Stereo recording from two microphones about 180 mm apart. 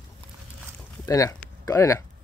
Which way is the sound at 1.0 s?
20° left (ahead or behind).